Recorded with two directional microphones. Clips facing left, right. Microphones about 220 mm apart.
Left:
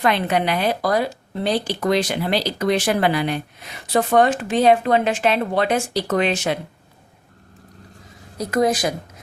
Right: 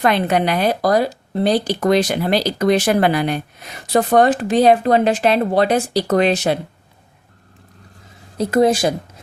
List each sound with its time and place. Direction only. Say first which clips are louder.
0.0 s a woman's voice: right 3 dB; 45° right (ahead or behind)
8.4 s speech: right 4 dB; 30° right (ahead or behind)